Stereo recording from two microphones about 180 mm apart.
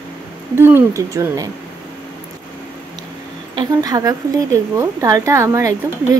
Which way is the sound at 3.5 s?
20° right (ahead or behind).